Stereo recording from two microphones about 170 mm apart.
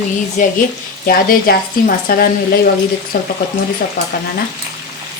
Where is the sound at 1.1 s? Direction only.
60° left (ahead or behind).